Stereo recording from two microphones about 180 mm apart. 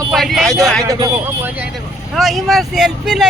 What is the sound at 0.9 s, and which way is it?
Speech, 20° right (ahead or behind).